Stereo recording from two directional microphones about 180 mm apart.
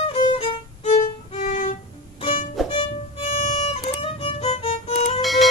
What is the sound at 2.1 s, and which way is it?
Music, 30° left (ahead or behind).